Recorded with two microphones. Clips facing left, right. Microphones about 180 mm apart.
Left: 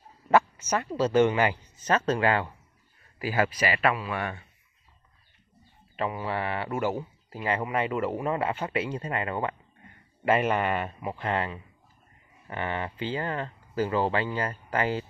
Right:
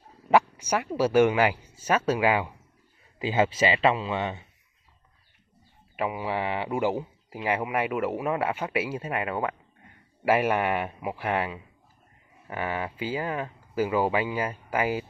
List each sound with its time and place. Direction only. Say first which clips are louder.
0.3 s speech: right 1 dB; 15° right (ahead or behind)
3.2 s speech: right 3 dB; 20° right (ahead or behind)
5.9 s speech: right 1 dB; 10° right (ahead or behind)